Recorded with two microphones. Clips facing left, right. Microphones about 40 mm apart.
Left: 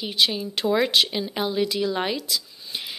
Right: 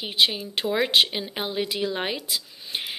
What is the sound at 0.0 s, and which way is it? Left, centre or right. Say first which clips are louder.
Speech: even; centre.